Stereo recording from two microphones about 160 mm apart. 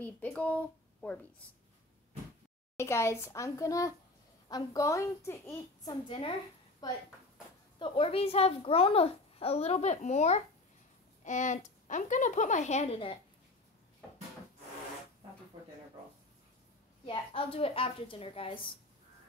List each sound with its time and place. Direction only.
0.0 s speech: 10° left (ahead or behind)
2.8 s a child's voice: 15° left (ahead or behind)
6.0 s a child's voice: 35° left (ahead or behind)
6.8 s a woman's voice: 25° left (ahead or behind)
7.8 s a child's voice: 35° left (ahead or behind)
17.0 s a child's voice: 35° left (ahead or behind)